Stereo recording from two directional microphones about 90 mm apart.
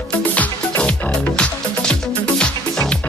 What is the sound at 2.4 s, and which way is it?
Music, 10° left (ahead or behind).